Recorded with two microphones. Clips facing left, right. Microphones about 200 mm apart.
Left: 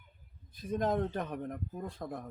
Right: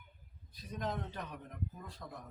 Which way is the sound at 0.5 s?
50° left (ahead or behind).